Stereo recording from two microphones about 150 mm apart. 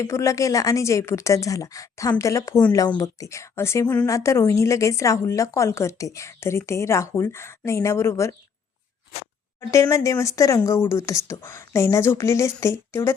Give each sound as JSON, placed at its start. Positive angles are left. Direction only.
{"t": 0.0, "sound": "speech", "side_deg": 20}
{"t": 9.6, "sound": "speech", "side_deg": 20}